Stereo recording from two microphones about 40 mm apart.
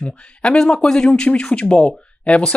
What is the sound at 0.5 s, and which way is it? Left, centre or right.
Speech, centre.